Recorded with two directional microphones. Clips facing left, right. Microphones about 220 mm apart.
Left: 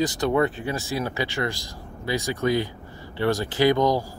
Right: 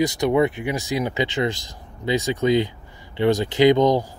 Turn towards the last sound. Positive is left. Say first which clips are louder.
# right 4 dB
turn(degrees=-20)  # may be behind; listen again after turning